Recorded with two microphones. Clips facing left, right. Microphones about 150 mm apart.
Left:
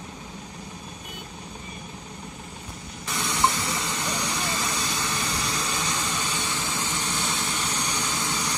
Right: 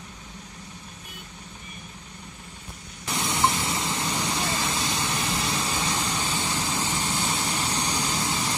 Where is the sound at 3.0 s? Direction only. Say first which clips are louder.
Even; 25° right (ahead or behind).